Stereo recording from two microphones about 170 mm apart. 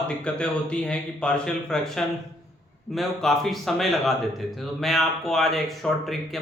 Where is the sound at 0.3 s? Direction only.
5° left (ahead or behind).